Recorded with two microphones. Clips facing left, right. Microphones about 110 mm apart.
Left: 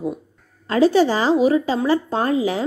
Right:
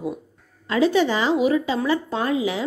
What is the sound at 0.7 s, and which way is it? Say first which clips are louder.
Speech: left 3 dB; 35° left (ahead or behind).